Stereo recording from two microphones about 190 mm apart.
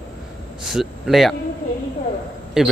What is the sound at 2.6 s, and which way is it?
Speech, centre (ahead or behind).